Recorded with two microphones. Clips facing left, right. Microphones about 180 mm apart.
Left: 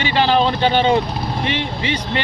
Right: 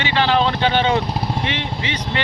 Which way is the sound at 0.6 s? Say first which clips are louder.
Left 2 dB; 40° left (ahead or behind).